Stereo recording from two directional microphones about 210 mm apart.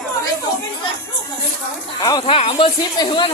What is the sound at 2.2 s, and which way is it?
Speech, 30° left (ahead or behind).